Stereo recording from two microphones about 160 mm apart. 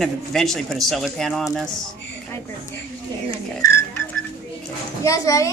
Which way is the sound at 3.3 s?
20° left (ahead or behind).